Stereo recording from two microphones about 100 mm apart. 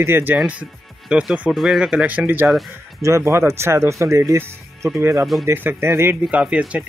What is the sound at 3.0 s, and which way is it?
Speech, 30° right (ahead or behind).